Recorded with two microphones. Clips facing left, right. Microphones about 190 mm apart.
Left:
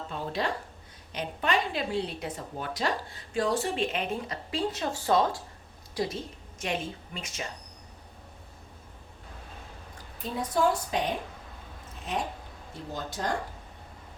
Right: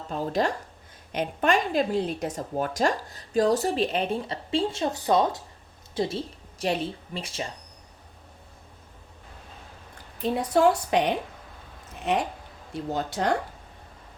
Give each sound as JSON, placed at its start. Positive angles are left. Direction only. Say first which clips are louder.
{"t": 0.1, "sound": "a woman's voice", "louder": "right 6 dB", "side_deg": -45}
{"t": 10.2, "sound": "a woman's voice", "louder": "right 6 dB", "side_deg": -70}